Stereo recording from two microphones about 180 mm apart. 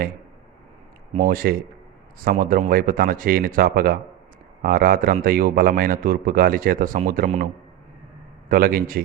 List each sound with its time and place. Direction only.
1.1 s a man's voice: 50° right (ahead or behind)